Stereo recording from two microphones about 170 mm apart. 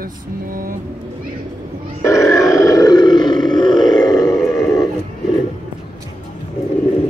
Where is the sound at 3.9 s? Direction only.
25° left (ahead or behind).